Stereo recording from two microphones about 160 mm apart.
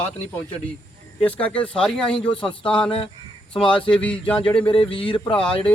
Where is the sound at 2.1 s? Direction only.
30° left (ahead or behind).